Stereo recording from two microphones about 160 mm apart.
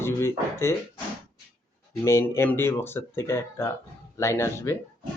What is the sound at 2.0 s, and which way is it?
Speech, 15° left (ahead or behind).